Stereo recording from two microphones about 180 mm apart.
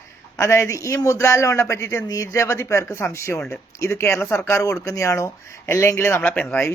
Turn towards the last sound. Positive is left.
turn(degrees=10)  # may be behind; listen again after turning